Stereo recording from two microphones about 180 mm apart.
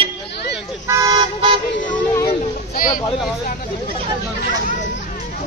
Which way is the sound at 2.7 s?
50° left (ahead or behind).